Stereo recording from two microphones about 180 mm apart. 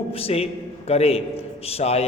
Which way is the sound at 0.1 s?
35° left (ahead or behind).